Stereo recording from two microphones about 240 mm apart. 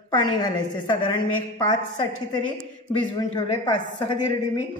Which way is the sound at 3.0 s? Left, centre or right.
Centre.